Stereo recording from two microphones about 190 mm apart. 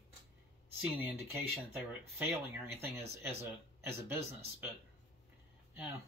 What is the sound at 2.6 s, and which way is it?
Speech, 15° right (ahead or behind).